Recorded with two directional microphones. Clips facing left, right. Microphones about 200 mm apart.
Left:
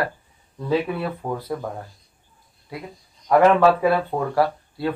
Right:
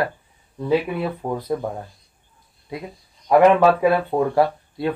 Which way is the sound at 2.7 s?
20° right (ahead or behind).